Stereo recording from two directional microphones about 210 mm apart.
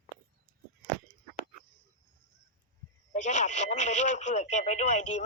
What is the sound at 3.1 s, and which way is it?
Speech, 35° left (ahead or behind).